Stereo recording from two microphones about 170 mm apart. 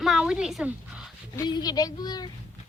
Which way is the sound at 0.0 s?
Centre (ahead or behind).